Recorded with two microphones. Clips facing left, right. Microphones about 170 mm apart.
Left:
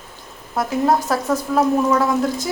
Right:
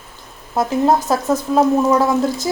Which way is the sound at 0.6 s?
20° right (ahead or behind).